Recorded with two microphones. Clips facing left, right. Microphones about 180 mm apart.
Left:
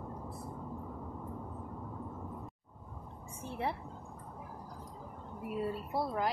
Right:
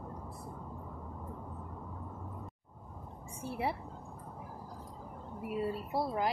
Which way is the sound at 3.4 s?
10° right (ahead or behind).